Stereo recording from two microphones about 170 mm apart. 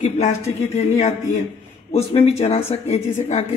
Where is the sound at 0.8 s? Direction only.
40° left (ahead or behind).